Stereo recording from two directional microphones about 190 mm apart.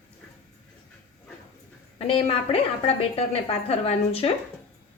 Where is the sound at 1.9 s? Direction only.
30° left (ahead or behind).